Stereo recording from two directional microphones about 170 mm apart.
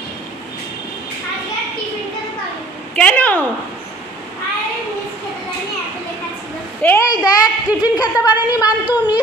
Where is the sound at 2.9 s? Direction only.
10° left (ahead or behind).